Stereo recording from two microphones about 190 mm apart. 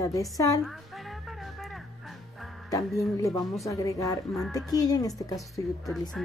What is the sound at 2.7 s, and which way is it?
A woman's voice, 15° left (ahead or behind).